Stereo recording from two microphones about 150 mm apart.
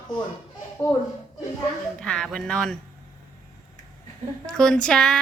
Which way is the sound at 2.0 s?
5° left (ahead or behind).